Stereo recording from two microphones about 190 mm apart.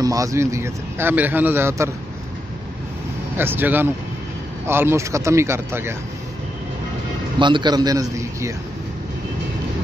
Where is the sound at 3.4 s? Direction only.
10° right (ahead or behind).